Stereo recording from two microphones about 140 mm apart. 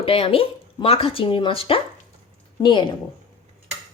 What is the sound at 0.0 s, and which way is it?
Speech, 40° left (ahead or behind).